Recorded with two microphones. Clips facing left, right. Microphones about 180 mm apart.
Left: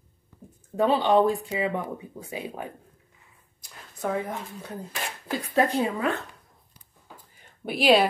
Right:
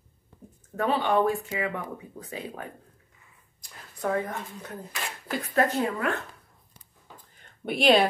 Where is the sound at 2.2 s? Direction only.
10° left (ahead or behind).